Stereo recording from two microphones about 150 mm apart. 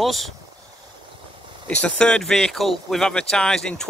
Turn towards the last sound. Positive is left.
turn(degrees=5)  # may be behind; listen again after turning